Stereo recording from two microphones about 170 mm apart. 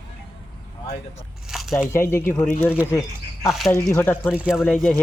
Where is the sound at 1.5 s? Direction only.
Centre (ahead or behind).